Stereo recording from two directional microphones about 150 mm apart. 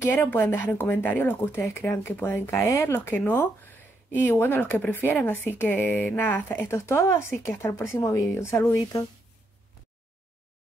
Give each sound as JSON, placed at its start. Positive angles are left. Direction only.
{"t": 0.0, "sound": "speech", "side_deg": 20}